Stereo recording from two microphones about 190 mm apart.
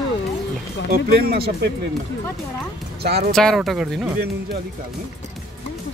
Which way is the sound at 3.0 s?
55° right (ahead or behind).